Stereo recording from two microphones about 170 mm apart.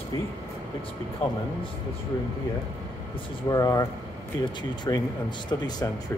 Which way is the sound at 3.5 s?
20° left (ahead or behind).